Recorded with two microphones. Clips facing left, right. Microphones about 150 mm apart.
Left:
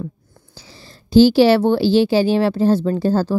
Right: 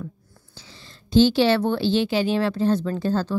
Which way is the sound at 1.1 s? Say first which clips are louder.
Left 6 dB; 35° left (ahead or behind).